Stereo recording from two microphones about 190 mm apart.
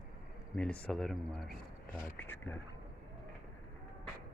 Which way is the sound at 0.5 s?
5° left (ahead or behind).